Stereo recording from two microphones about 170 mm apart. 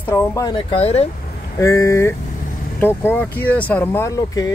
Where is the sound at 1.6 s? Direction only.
15° left (ahead or behind).